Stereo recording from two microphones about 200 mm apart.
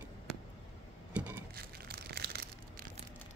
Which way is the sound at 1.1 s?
5° right (ahead or behind).